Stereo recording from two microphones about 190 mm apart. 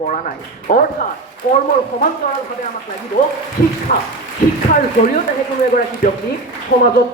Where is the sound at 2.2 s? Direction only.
45° left (ahead or behind).